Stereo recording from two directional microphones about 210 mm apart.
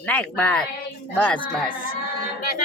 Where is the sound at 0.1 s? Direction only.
5° left (ahead or behind).